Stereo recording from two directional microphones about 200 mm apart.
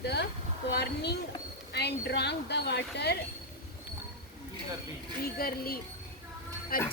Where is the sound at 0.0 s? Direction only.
55° left (ahead or behind).